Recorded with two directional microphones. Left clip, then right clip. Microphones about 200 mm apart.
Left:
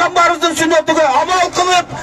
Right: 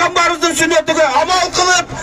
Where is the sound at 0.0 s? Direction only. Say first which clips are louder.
Left 1 dB; 30° right (ahead or behind).